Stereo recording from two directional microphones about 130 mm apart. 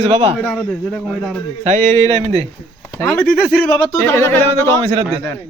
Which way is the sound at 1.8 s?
25° left (ahead or behind).